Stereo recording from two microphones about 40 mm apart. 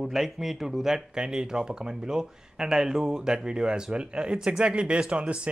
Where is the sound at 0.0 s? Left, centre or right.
Centre.